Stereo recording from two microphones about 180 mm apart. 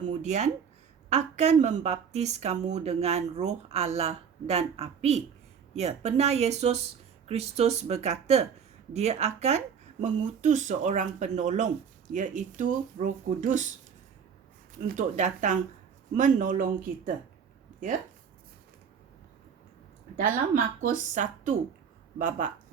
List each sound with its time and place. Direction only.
0.0 s speech: 40° right (ahead or behind)
14.9 s speech: 40° right (ahead or behind)
20.1 s speech: 50° right (ahead or behind)